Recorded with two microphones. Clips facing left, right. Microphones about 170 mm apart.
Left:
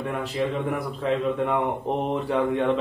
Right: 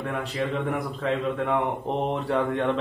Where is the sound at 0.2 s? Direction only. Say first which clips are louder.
Left 2 dB; centre (ahead or behind).